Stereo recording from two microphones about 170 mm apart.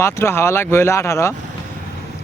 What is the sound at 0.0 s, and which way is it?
Speech, 15° left (ahead or behind).